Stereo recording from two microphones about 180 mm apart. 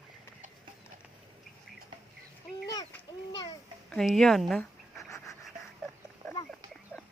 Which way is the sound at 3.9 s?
Centre (ahead or behind).